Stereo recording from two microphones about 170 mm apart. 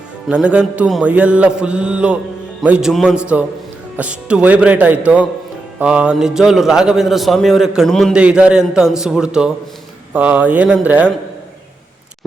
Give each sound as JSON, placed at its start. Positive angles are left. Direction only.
{"t": 0.3, "sound": "mantra", "side_deg": -5}
{"t": 2.6, "sound": "a man's voice", "side_deg": -5}
{"t": 3.9, "sound": "mantra", "side_deg": -5}
{"t": 5.8, "sound": "a man's voice", "side_deg": -5}
{"t": 10.1, "sound": "mantra", "side_deg": -10}